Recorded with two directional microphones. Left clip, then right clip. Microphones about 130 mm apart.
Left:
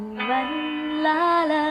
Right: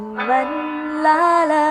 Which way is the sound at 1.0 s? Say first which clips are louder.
Right 6 dB; 10° right (ahead or behind).